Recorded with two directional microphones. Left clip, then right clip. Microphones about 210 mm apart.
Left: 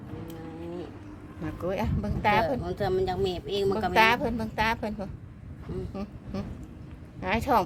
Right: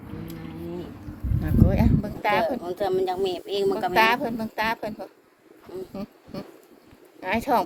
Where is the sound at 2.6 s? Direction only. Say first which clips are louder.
Right 3 dB; 25° right (ahead or behind).